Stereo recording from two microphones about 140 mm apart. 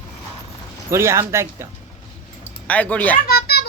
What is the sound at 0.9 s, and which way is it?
Speech, 20° right (ahead or behind).